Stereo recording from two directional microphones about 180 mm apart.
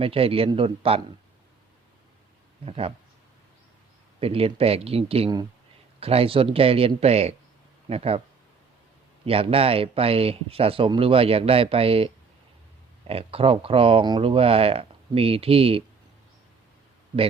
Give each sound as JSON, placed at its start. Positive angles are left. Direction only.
{"t": 0.0, "sound": "speech", "side_deg": -30}
{"t": 2.6, "sound": "speech", "side_deg": -30}
{"t": 4.2, "sound": "speech", "side_deg": -30}
{"t": 9.2, "sound": "speech", "side_deg": -30}